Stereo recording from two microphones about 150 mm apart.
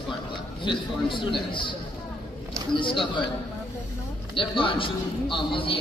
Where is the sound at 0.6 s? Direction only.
35° left (ahead or behind).